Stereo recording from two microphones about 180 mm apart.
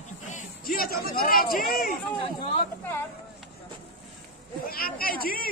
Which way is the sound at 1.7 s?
55° left (ahead or behind).